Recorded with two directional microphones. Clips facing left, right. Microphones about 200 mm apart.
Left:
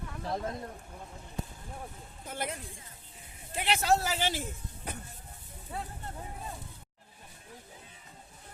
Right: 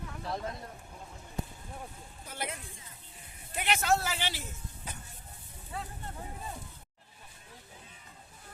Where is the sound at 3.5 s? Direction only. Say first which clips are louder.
Left 1 dB; 30° left (ahead or behind); by 5.0 s 55° left (ahead or behind).